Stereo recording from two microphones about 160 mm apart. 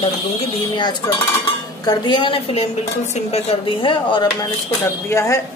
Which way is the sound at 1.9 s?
30° left (ahead or behind).